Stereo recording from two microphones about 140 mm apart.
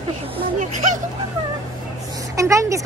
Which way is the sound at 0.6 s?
65° right (ahead or behind).